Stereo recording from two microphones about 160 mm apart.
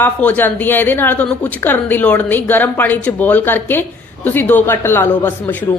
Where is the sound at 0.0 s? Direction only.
10° left (ahead or behind).